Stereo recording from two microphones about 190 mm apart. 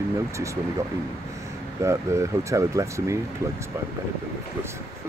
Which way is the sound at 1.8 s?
15° right (ahead or behind).